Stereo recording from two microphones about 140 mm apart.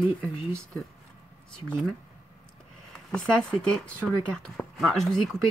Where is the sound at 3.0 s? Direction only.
5° left (ahead or behind).